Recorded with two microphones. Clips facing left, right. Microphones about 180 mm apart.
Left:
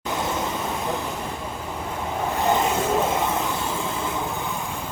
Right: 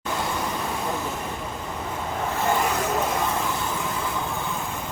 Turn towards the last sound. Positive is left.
turn(degrees=20)  # may be behind; listen again after turning